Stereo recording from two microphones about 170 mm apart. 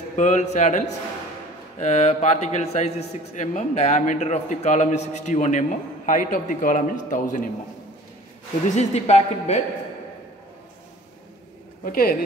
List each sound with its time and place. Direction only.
0.1 s a man's voice: 45° left (ahead or behind)
8.6 s a woman's voice: 40° left (ahead or behind)
11.8 s speech: 55° left (ahead or behind)